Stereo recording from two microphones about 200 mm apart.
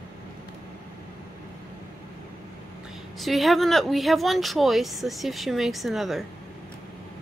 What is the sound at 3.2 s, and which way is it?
Speech, centre (ahead or behind).